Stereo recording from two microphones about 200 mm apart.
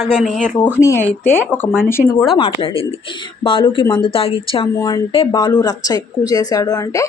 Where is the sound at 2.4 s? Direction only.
25° left (ahead or behind).